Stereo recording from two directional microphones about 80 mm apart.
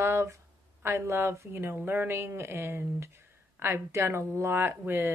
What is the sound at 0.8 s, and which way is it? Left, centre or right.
Speech, right.